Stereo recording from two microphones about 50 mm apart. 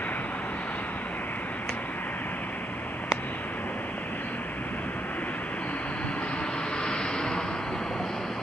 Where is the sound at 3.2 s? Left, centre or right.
Left.